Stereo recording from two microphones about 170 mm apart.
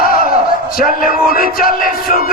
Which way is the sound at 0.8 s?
55° left (ahead or behind).